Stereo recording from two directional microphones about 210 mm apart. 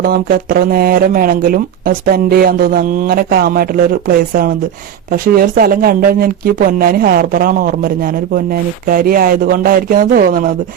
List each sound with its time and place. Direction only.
0.0 s speech: 45° right (ahead or behind)
5.1 s speech: 45° right (ahead or behind)